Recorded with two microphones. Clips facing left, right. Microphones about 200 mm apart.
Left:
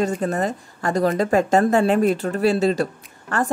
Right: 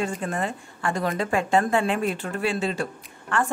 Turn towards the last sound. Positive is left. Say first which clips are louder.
# left 2 dB
turn(degrees=40)  # may be behind; listen again after turning